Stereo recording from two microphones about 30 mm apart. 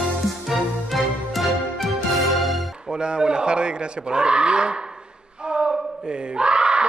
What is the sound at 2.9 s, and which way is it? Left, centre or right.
Speech, right.